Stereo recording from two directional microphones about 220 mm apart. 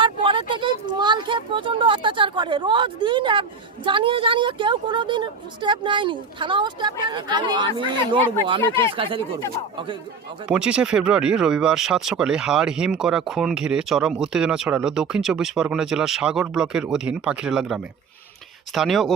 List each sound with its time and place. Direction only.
0.0 s a sound: 20° right (ahead or behind)
3.8 s a woman's voice: 25° right (ahead or behind)
8.8 s a woman's voice: 25° right (ahead or behind)
10.5 s speech: 5° right (ahead or behind)